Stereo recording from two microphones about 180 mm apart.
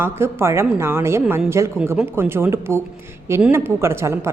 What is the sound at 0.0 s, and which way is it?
Speech, 15° right (ahead or behind).